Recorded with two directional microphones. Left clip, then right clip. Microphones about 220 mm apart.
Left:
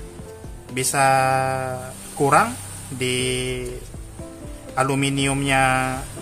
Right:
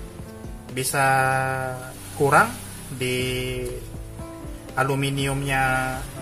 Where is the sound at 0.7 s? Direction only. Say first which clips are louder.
Left 3 dB; 10° left (ahead or behind).